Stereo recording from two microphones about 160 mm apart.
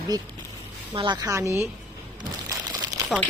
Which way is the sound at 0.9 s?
30° right (ahead or behind).